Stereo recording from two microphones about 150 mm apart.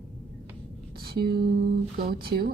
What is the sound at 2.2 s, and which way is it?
Speech, 90° right.